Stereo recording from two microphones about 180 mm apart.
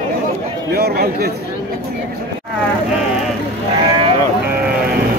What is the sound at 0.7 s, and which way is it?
Speech, 60° right (ahead or behind).